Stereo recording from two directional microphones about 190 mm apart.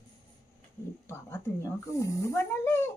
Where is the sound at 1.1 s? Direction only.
15° left (ahead or behind).